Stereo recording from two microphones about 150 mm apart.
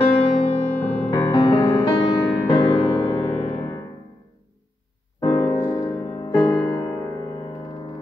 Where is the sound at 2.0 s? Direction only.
30° left (ahead or behind).